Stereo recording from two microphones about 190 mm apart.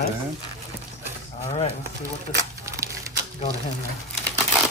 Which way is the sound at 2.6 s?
15° right (ahead or behind).